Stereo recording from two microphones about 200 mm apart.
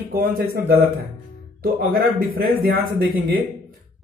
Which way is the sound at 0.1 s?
50° right (ahead or behind).